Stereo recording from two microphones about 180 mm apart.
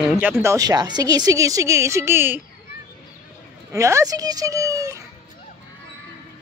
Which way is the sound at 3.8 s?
15° right (ahead or behind).